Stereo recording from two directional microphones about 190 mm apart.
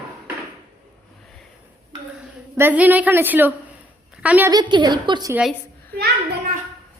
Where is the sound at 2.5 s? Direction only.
10° right (ahead or behind).